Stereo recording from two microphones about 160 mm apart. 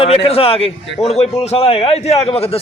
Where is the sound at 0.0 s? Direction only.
40° left (ahead or behind).